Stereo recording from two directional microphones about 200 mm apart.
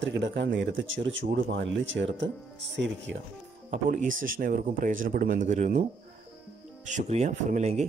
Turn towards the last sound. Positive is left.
turn(degrees=-35)  # may be behind; listen again after turning